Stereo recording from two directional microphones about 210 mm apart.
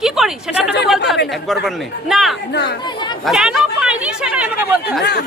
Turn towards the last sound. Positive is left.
turn(degrees=-5)  # may be behind; listen again after turning